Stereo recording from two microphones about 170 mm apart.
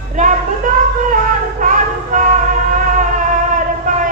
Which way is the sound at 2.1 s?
50° right (ahead or behind).